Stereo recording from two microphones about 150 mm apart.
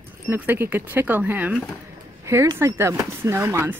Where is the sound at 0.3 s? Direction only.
15° right (ahead or behind).